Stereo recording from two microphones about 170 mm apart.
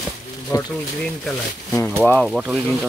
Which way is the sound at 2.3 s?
5° right (ahead or behind).